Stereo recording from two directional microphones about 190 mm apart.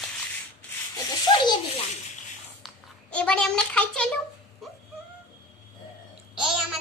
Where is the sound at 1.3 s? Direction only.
25° left (ahead or behind).